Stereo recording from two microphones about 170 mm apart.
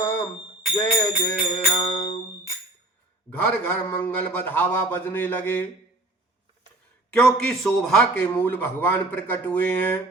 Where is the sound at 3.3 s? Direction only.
10° left (ahead or behind).